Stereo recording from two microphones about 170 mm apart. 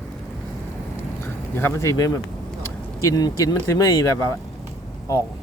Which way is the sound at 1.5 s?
15° left (ahead or behind).